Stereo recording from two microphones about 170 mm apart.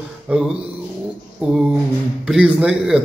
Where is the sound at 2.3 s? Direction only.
5° right (ahead or behind).